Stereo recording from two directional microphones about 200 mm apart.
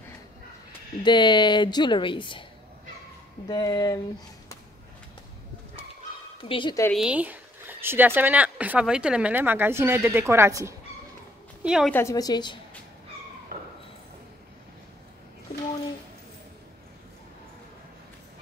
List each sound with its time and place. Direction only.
1.0 s speech: 20° left (ahead or behind)
3.4 s a woman's voice: 20° left (ahead or behind)
6.5 s speech: 20° left (ahead or behind)
6.9 s speech: 5° right (ahead or behind)
11.6 s a woman's voice: 5° right (ahead or behind)
11.9 s a woman's voice: 15° left (ahead or behind)
13.5 s a sound: 45° right (ahead or behind)